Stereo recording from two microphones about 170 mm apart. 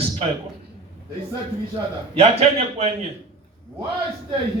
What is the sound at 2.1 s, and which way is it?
Speech, 35° right (ahead or behind).